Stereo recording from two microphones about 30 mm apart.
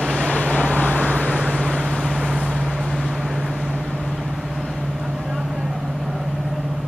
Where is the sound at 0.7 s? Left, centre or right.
Left.